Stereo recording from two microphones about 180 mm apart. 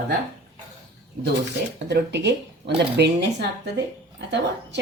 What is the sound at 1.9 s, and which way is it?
Speech, 70° right (ahead or behind).